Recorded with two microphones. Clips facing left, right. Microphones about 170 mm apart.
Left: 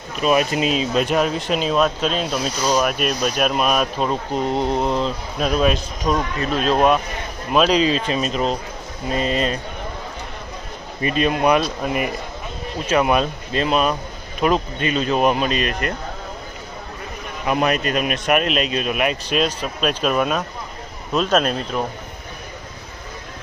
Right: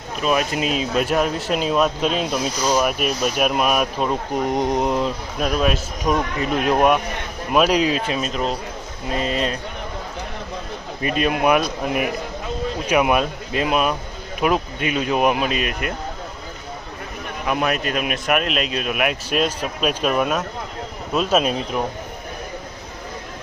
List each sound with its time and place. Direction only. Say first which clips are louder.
0.2 s speech: left 3 dB; 5° left (ahead or behind)
6.1 s speech: even; 15° right (ahead or behind); by 9.6 s centre (ahead or behind)
11.0 s speech: left 1 dB; 5° right (ahead or behind)
12.9 s speech: left 1 dB; 10° right (ahead or behind)
17.4 s speech: left 2 dB; centre (ahead or behind)